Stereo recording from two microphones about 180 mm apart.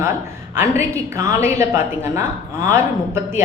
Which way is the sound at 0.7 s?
15° right (ahead or behind).